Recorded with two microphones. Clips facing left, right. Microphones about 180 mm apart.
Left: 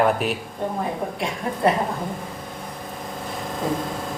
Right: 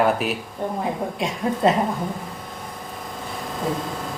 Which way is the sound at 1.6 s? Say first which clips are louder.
Right 1 dB; 20° right (ahead or behind).